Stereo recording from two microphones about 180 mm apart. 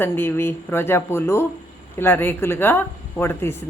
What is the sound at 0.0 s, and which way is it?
Speech, 10° left (ahead or behind).